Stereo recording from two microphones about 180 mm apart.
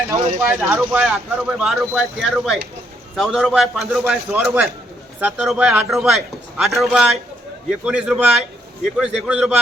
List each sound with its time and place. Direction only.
0.1 s speech: 15° right (ahead or behind)
0.6 s speech: centre (ahead or behind)